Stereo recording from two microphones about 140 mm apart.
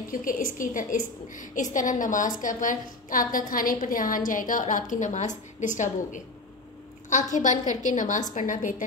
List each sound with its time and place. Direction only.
0.1 s a woman's voice: 75° left (ahead or behind)
7.3 s a woman's voice: 60° left (ahead or behind)